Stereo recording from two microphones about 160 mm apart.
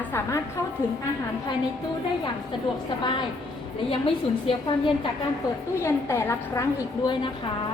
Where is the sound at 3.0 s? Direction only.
30° left (ahead or behind).